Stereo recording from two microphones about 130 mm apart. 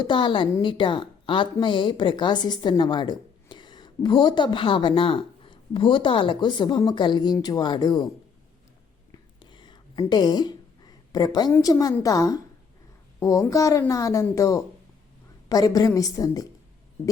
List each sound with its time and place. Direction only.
0.0 s a woman's voice: 40° left (ahead or behind)
9.1 s a sound: 35° left (ahead or behind)
11.6 s a woman's voice: 30° left (ahead or behind)